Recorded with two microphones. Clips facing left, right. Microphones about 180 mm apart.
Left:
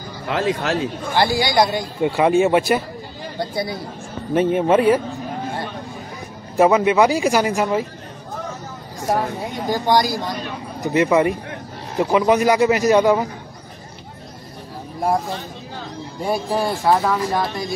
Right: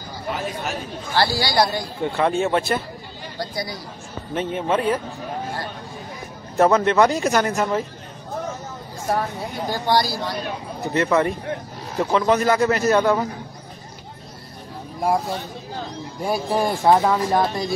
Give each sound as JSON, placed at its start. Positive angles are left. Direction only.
{"t": 0.3, "sound": "speech", "side_deg": 90}
{"t": 1.1, "sound": "speech", "side_deg": 20}
{"t": 3.3, "sound": "speech", "side_deg": 25}
{"t": 4.4, "sound": "speech", "side_deg": 10}
{"t": 6.5, "sound": "speech", "side_deg": 5}
{"t": 9.1, "sound": "speech", "side_deg": 15}
{"t": 16.4, "sound": "speech", "side_deg": -20}